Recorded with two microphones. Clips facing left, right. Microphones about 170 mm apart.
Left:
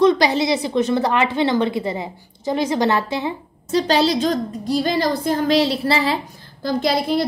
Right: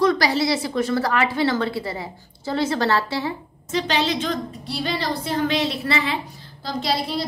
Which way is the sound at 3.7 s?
40° left (ahead or behind).